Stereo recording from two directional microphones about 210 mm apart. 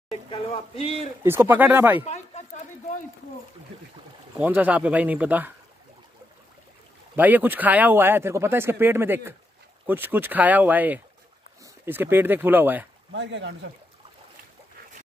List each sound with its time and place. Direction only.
0.1 s a sound: 25° left (ahead or behind)
1.2 s speech: 10° right (ahead or behind)
2.0 s a sound: 30° left (ahead or behind)
4.4 s speech: 5° right (ahead or behind)
7.2 s speech: 10° right (ahead or behind)
13.1 s speech: 55° right (ahead or behind)